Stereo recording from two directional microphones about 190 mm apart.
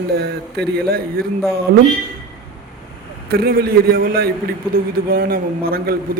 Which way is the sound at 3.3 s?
55° right (ahead or behind).